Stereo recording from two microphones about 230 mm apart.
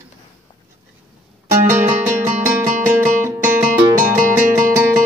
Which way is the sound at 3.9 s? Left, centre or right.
Right.